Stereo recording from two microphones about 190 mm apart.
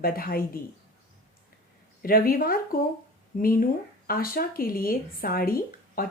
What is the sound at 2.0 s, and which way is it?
Speech, 50° left (ahead or behind).